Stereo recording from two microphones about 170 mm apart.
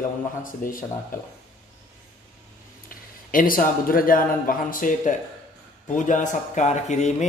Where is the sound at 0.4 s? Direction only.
55° left (ahead or behind).